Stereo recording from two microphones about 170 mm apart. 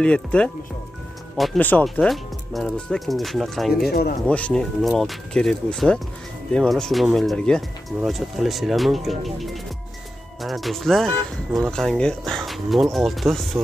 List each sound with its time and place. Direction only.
0.0 s speech: 5° left (ahead or behind)
3.9 s speech: 65° left (ahead or behind)
4.3 s speech: 5° left (ahead or behind)